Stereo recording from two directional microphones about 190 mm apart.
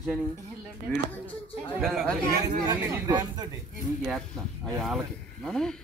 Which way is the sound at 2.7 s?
15° right (ahead or behind).